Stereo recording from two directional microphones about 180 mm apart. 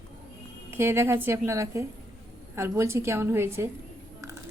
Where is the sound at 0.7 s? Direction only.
15° right (ahead or behind).